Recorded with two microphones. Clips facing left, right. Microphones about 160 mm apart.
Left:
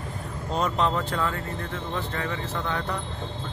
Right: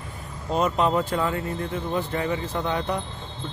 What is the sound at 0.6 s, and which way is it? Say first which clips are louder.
Speech: right 3 dB; 5° right (ahead or behind).